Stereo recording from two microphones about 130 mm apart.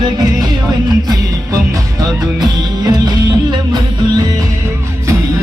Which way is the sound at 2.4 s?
30° right (ahead or behind).